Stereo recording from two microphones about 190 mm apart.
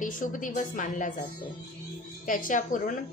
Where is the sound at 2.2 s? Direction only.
45° left (ahead or behind).